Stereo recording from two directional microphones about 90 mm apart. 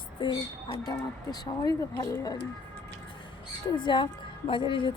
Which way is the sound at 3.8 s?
60° left (ahead or behind).